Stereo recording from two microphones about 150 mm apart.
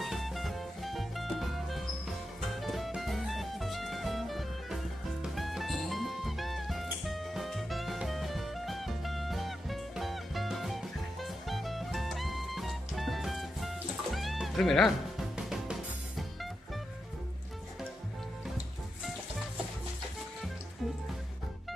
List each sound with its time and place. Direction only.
0.0 s music: centre (ahead or behind)